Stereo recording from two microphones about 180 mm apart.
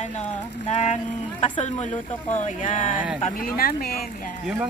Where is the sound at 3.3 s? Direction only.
55° left (ahead or behind).